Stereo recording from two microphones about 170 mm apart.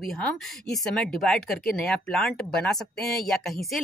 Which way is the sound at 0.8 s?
5° left (ahead or behind).